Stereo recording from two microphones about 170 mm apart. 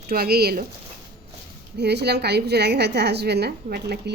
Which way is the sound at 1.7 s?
75° right (ahead or behind).